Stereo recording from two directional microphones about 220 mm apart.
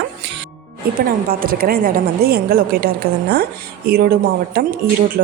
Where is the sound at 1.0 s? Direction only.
40° right (ahead or behind).